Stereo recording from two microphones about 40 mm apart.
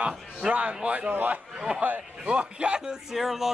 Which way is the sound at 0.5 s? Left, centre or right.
Right.